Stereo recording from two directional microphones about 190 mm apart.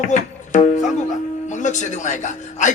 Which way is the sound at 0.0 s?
40° left (ahead or behind).